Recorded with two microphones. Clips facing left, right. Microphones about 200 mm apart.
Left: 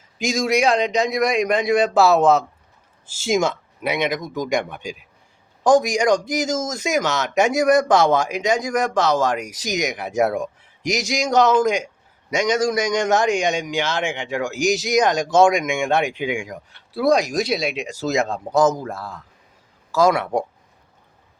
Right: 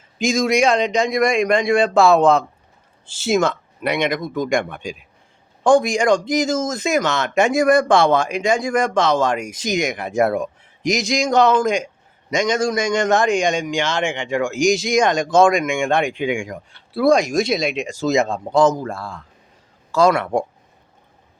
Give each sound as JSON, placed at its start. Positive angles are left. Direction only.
{"t": 0.2, "sound": "a man's voice", "side_deg": 10}